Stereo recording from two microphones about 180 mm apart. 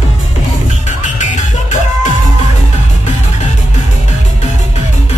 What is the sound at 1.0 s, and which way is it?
Music, 45° left (ahead or behind).